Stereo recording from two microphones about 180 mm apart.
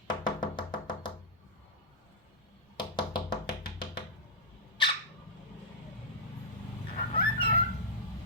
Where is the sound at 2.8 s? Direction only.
25° left (ahead or behind).